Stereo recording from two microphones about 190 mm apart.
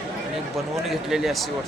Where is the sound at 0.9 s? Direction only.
Centre (ahead or behind).